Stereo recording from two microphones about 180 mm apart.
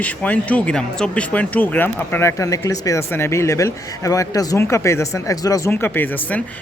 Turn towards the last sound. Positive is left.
turn(degrees=10)  # may be behind; listen again after turning